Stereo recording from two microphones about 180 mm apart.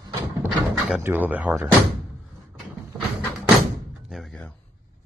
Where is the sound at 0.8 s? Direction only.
10° right (ahead or behind).